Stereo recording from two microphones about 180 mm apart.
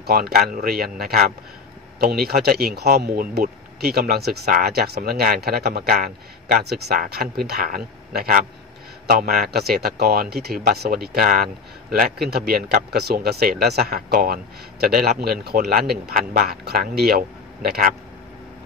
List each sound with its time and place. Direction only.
0.0 s speech: 55° right (ahead or behind)